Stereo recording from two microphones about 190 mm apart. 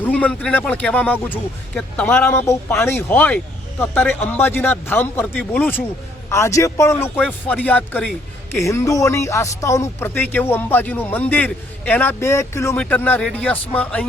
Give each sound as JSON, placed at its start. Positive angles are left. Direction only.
{"t": 0.0, "sound": "speech", "side_deg": 10}